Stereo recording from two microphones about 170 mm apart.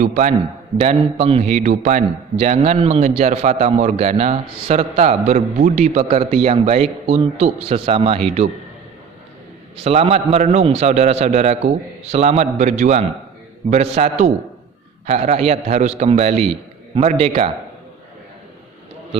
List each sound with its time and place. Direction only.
0.0 s a man's voice: 45° right (ahead or behind)
2.3 s a man's voice: 35° right (ahead or behind)
9.8 s a man's voice: 35° right (ahead or behind)